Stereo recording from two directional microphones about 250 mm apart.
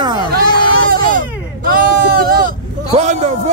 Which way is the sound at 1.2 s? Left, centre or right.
Right.